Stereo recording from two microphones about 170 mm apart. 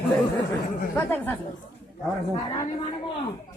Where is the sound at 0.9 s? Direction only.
10° left (ahead or behind).